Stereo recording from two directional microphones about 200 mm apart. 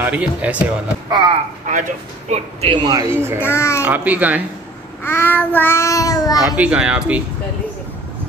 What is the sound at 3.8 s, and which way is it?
Speech, 10° right (ahead or behind).